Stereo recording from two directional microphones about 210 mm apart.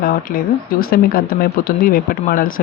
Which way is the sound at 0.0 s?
40° left (ahead or behind).